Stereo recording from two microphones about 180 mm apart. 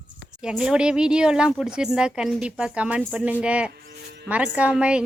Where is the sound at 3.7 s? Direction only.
65° right (ahead or behind).